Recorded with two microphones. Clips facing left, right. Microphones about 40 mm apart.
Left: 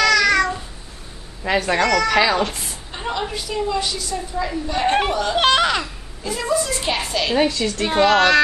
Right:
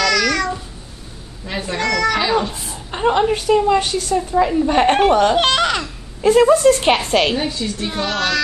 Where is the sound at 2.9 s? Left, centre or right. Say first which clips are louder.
Right 10 dB; right.